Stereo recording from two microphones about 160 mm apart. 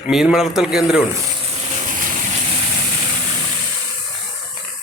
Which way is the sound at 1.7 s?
55° right (ahead or behind).